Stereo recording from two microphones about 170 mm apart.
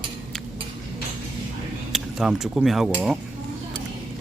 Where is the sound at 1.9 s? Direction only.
Centre (ahead or behind).